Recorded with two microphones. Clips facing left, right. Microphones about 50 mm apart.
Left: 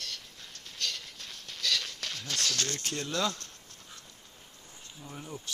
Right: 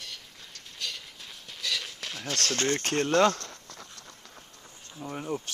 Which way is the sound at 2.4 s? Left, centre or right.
Right.